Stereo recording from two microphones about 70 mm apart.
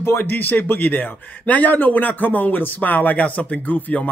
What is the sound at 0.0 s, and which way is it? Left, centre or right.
A man's voice, left.